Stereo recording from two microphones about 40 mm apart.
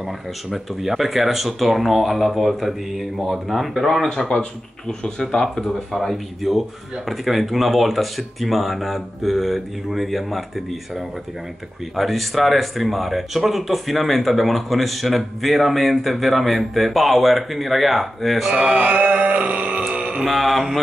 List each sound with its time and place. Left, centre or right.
0.5 s speech: centre
4.3 s speech: left
6.0 s speech: centre
18.8 s music: right
19.9 s music: right
20.2 s speech: centre